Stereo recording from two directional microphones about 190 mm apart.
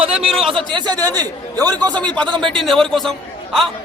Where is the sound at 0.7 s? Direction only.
20° right (ahead or behind).